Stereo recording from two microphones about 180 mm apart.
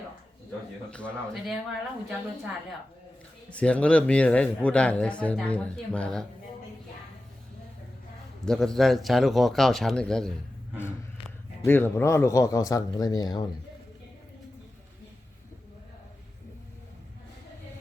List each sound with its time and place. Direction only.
0.9 s speech: 5° left (ahead or behind)
8.4 s speech: centre (ahead or behind)
11.6 s speech: 10° left (ahead or behind)